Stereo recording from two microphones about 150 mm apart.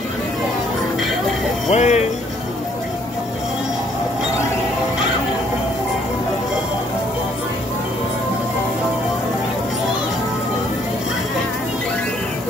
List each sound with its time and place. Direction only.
1.7 s speech: 50° left (ahead or behind)